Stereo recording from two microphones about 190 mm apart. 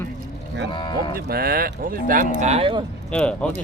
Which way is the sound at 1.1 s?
55° right (ahead or behind).